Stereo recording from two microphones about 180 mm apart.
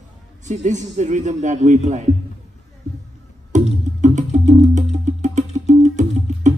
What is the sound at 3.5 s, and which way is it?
Music, 40° right (ahead or behind).